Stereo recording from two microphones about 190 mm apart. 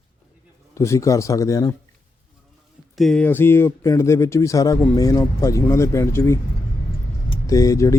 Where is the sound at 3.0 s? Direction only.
5° left (ahead or behind).